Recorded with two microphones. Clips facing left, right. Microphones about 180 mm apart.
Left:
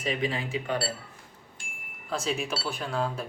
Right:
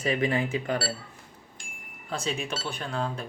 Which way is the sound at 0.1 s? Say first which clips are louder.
Right 3 dB; 60° right (ahead or behind).